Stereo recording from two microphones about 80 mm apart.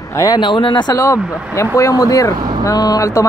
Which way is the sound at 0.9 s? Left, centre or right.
Left.